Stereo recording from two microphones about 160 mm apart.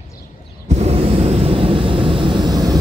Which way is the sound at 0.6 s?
40° right (ahead or behind).